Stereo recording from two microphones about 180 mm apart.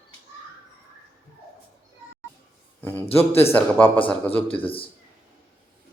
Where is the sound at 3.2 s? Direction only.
35° left (ahead or behind).